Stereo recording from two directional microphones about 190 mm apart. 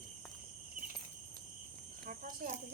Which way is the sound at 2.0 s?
45° right (ahead or behind).